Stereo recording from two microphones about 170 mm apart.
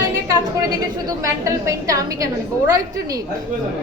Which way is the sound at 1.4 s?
20° right (ahead or behind).